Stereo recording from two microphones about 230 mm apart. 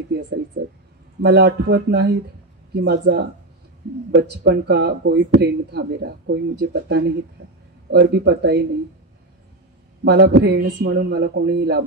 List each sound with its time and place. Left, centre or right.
0.6 s speech: right
10.0 s speech: right